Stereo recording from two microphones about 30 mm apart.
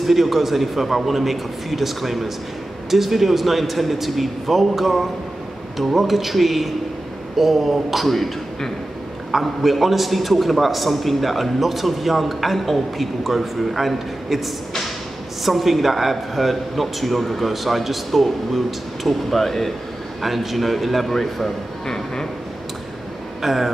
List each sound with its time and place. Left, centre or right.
0.0 s a man's voice: centre
9.4 s a man's voice: centre
15.4 s a man's voice: centre
23.4 s a man's voice: centre